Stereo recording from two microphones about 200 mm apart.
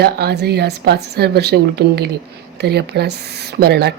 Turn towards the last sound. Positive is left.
turn(degrees=-55)  # may be behind; listen again after turning